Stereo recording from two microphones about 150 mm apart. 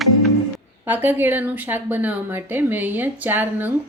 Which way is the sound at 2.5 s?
10° right (ahead or behind).